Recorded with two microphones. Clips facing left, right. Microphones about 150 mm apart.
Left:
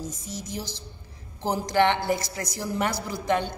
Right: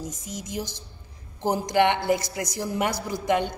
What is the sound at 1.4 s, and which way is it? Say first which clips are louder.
A woman's voice: right 1 dB; 15° right (ahead or behind).